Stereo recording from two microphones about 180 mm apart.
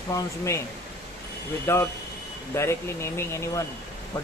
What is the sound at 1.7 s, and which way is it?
Speech, 15° left (ahead or behind).